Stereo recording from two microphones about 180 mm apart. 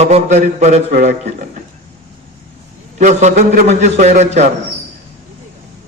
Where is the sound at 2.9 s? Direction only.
40° right (ahead or behind).